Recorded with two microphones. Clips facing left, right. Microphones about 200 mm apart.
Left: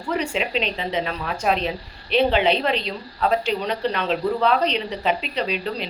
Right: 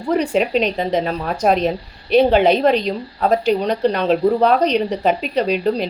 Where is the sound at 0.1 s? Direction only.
40° right (ahead or behind).